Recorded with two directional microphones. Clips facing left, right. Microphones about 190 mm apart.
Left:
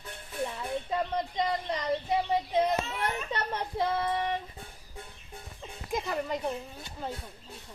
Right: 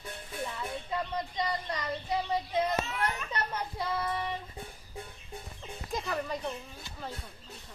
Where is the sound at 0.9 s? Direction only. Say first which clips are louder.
Left 3 dB; 25° left (ahead or behind).